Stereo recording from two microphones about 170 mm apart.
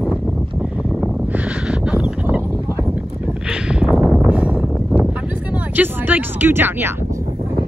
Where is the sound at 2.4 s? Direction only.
10° left (ahead or behind).